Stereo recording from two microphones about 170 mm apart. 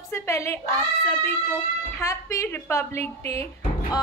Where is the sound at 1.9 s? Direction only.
15° left (ahead or behind).